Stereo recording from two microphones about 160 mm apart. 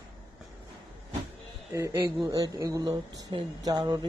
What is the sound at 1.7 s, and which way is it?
Speech, 20° right (ahead or behind).